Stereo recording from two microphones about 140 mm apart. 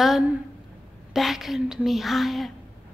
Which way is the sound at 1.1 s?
Centre (ahead or behind).